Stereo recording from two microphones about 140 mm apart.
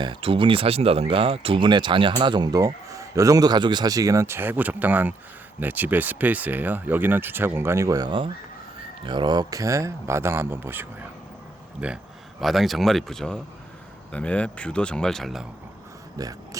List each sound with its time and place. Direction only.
0.0 s speech: 40° right (ahead or behind); by 15.4 s centre (ahead or behind)
16.1 s speech: 25° right (ahead or behind)